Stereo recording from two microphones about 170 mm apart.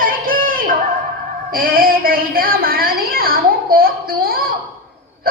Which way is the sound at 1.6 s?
60° right (ahead or behind).